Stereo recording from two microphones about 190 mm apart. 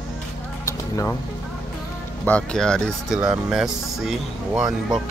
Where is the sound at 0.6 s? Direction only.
15° left (ahead or behind).